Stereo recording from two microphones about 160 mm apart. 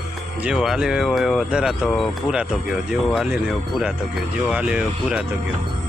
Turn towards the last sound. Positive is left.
turn(degrees=-5)  # may be behind; listen again after turning